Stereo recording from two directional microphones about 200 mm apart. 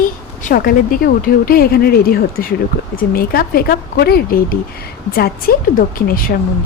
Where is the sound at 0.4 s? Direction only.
50° left (ahead or behind).